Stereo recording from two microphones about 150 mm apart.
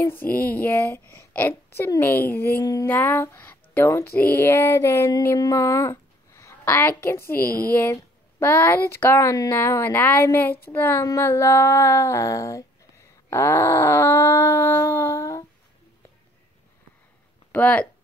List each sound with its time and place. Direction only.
0.0 s speech: 15° left (ahead or behind)
7.2 s child singing: 75° left (ahead or behind)
7.7 s speech: 15° left (ahead or behind)
17.5 s speech: 10° left (ahead or behind)